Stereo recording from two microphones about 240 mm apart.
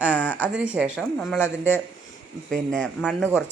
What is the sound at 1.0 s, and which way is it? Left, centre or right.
Speech, centre.